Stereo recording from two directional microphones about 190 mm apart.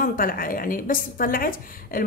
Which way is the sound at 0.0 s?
45° left (ahead or behind).